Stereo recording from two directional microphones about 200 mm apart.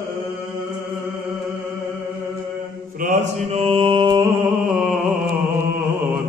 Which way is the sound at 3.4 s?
30° right (ahead or behind).